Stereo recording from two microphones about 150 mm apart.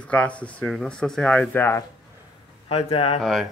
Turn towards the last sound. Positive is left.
turn(degrees=40)  # may be behind; listen again after turning